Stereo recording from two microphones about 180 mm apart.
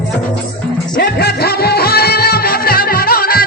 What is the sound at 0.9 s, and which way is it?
Music, 60° left (ahead or behind).